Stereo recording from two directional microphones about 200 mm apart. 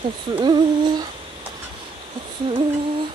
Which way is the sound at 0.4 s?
20° right (ahead or behind).